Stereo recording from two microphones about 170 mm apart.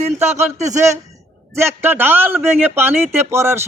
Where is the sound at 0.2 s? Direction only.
15° right (ahead or behind).